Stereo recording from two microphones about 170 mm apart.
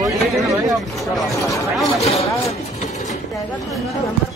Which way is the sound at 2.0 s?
35° left (ahead or behind).